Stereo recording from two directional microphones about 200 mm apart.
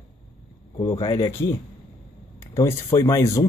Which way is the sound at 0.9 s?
20° left (ahead or behind).